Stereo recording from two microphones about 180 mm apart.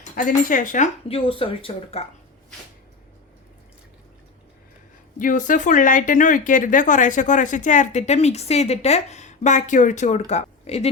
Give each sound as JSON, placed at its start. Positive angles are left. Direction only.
{"t": 0.0, "sound": "speech", "side_deg": 50}
{"t": 5.2, "sound": "speech", "side_deg": 45}